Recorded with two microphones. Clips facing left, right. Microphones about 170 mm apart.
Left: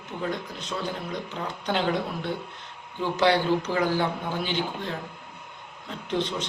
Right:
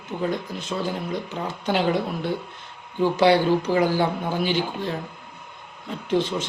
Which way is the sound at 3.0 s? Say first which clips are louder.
Right 5 dB; 10° right (ahead or behind).